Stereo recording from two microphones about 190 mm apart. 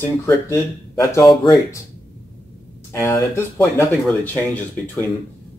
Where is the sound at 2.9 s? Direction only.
15° left (ahead or behind).